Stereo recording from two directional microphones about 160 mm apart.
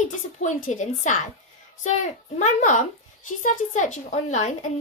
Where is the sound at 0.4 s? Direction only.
50° left (ahead or behind).